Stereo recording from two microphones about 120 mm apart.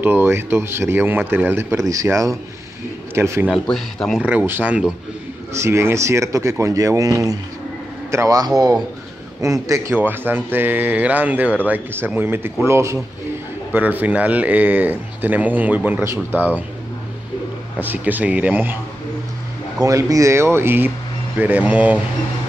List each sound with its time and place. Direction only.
0.0 s speech: 15° right (ahead or behind)
3.5 s speech: 5° left (ahead or behind)
4.3 s speech: 15° right (ahead or behind)
5.5 s a man's voice: 20° right (ahead or behind)
9.9 s speech: 15° right (ahead or behind)
17.7 s speech: 15° right (ahead or behind)
19.8 s speech: 30° right (ahead or behind); by 22.0 s 10° right (ahead or behind)